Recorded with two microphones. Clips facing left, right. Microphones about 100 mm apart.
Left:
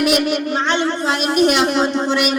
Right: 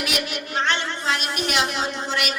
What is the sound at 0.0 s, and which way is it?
A man's voice, 50° left (ahead or behind).